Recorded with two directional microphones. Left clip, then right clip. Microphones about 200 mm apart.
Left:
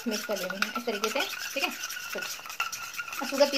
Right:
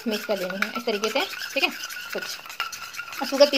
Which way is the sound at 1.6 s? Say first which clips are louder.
Right 7 dB; 30° right (ahead or behind).